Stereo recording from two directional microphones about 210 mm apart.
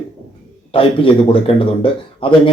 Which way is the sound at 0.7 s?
25° left (ahead or behind).